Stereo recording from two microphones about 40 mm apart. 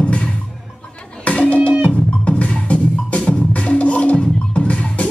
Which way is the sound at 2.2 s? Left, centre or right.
Left.